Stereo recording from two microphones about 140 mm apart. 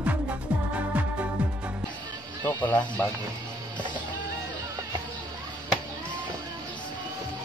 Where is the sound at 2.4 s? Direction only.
10° left (ahead or behind).